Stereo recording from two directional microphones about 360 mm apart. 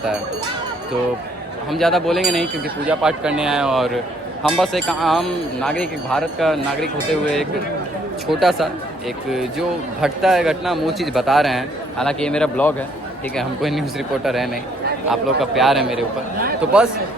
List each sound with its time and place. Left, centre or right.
1.7 s a man's voice: centre
8.3 s a man's voice: centre
15.1 s a man's voice: centre